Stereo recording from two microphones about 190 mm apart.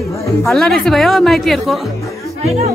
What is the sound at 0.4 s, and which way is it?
Speech, centre (ahead or behind).